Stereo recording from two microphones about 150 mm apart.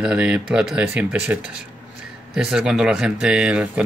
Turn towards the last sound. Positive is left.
turn(degrees=-5)  # may be behind; listen again after turning